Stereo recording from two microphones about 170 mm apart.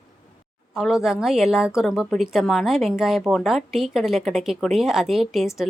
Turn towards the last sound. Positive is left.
turn(degrees=0)  # may be behind; listen again after turning